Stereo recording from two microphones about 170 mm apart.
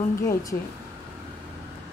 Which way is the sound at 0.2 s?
20° left (ahead or behind).